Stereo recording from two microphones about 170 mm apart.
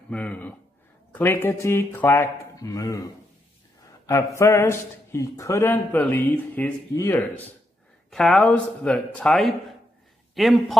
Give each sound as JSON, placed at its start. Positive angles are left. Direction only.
{"t": 0.1, "sound": "speech", "side_deg": 10}